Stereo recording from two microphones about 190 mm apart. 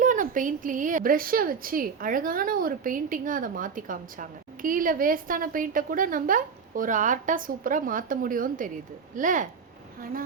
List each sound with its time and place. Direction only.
0.0 s a woman's voice: 45° right (ahead or behind)